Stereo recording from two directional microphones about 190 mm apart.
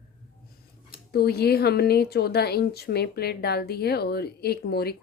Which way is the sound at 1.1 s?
55° left (ahead or behind).